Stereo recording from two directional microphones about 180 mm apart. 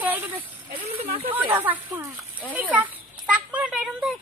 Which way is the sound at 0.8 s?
35° right (ahead or behind).